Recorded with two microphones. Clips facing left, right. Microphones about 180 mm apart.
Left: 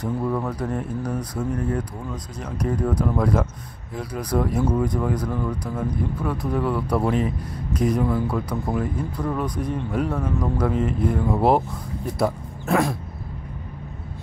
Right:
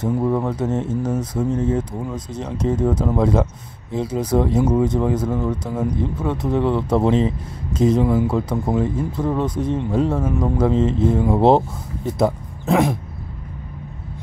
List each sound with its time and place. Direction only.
0.0 s speech: 25° right (ahead or behind)